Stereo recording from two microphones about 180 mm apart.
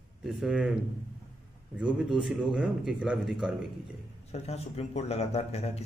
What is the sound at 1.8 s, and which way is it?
Speech, 5° right (ahead or behind).